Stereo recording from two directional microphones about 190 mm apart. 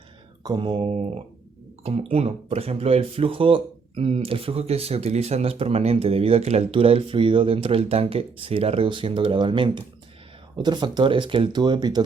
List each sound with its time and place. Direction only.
0.4 s speech: 25° right (ahead or behind)